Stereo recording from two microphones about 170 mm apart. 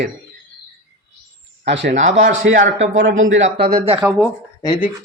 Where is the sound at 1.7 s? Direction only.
90° right.